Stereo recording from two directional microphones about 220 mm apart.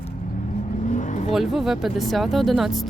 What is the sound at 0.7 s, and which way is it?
Vehicle, 35° left (ahead or behind).